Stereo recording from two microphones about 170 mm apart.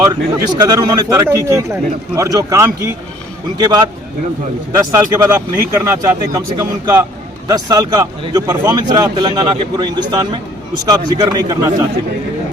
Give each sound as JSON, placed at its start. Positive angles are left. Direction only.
{"t": 0.0, "sound": "a man's voice", "side_deg": -20}